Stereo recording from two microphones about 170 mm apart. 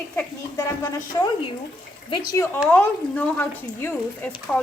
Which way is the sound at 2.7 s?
10° left (ahead or behind).